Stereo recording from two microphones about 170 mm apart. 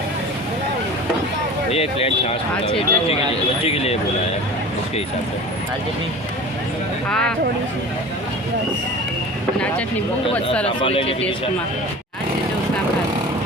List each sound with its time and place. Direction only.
1.7 s speech: 35° left (ahead or behind)
7.1 s speech: 5° left (ahead or behind)
10.3 s speech: 5° left (ahead or behind)
10.8 s speech: 30° left (ahead or behind)